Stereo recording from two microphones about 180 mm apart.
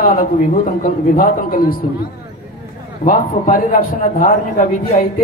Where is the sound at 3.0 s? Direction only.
50° left (ahead or behind).